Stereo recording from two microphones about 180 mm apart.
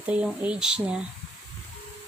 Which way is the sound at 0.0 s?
5° right (ahead or behind).